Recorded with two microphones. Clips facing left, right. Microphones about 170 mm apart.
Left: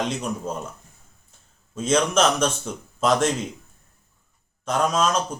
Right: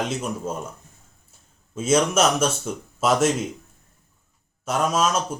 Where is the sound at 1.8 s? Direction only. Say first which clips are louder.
Right 1 dB; 10° right (ahead or behind).